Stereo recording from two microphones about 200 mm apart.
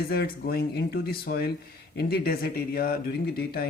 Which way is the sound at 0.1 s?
50° left (ahead or behind).